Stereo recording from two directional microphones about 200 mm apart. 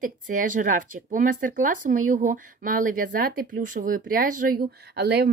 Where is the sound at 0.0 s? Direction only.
40° right (ahead or behind).